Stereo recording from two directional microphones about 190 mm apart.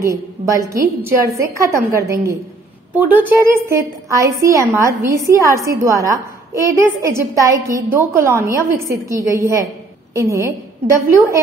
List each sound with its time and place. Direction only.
0.1 s a woman's voice: 15° right (ahead or behind)